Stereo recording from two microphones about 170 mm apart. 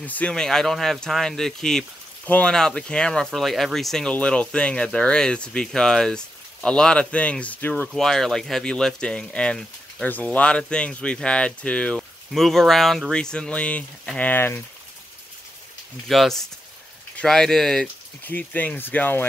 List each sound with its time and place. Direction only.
0.0 s speech: 10° left (ahead or behind)
16.1 s speech: centre (ahead or behind)